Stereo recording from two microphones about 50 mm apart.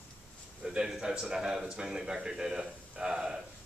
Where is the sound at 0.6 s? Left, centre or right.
Centre.